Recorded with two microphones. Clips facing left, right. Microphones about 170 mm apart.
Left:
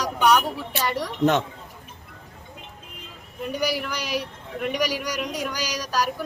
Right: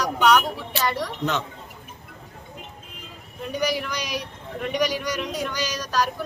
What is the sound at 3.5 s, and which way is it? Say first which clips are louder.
A man's voice: right 1 dB; 5° left (ahead or behind).